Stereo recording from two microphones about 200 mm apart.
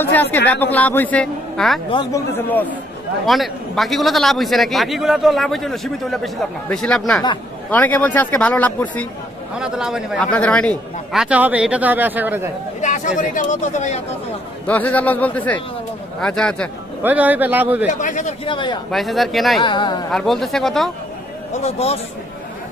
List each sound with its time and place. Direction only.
0.0 s a man's voice: 10° left (ahead or behind)
9.6 s a man's voice: 5° right (ahead or behind)
12.8 s speech: 40° left (ahead or behind)
14.7 s a man's voice: 5° left (ahead or behind)
17.0 s speech: 10° right (ahead or behind)
18.0 s speech: 35° left (ahead or behind)
18.5 s a man's voice: 25° left (ahead or behind)
18.9 s a man's voice: centre (ahead or behind)
19.6 s a man's voice: 25° left (ahead or behind)
20.1 s a man's voice: centre (ahead or behind)
21.6 s speech: 30° left (ahead or behind)